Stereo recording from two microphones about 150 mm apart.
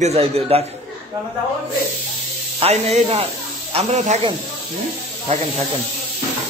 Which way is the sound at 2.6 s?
45° right (ahead or behind).